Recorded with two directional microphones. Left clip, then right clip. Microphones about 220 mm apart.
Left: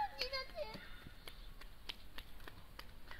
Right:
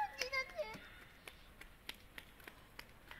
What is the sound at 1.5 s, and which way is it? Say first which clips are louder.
Run: left 2 dB; 15° right (ahead or behind).